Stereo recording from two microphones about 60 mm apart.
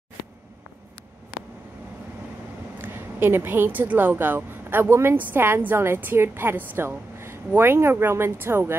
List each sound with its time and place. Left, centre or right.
2.8 s a woman's voice: right
7.2 s speech: right